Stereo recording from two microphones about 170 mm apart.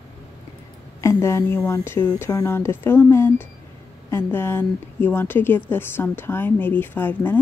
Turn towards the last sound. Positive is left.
turn(degrees=10)  # may be behind; listen again after turning